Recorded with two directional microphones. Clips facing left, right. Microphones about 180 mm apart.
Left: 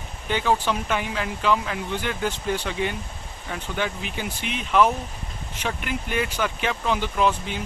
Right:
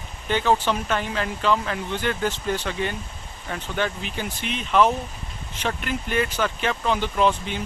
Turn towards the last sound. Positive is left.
turn(degrees=10)  # may be behind; listen again after turning